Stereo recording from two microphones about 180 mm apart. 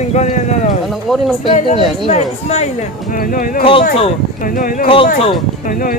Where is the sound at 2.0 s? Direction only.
35° left (ahead or behind).